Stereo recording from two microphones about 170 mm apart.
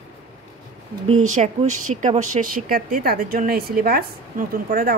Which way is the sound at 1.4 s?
45° right (ahead or behind).